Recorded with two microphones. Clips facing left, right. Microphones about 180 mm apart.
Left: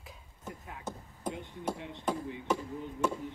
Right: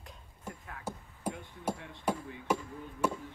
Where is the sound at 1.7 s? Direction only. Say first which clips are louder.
Left 3 dB; 20° left (ahead or behind).